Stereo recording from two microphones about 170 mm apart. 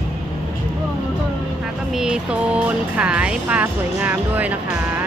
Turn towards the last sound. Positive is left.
turn(degrees=-10)  # may be behind; listen again after turning